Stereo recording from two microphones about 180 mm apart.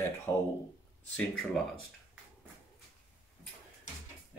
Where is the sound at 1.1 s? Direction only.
5° left (ahead or behind).